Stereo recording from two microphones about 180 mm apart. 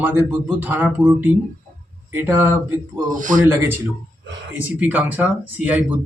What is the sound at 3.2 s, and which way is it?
Speech, 45° right (ahead or behind).